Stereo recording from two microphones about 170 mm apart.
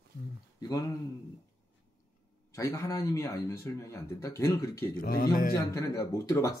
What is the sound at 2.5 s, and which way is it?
Speech, 15° left (ahead or behind).